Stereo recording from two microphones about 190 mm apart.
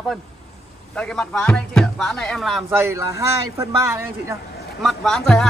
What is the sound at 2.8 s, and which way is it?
A man's voice, 15° right (ahead or behind).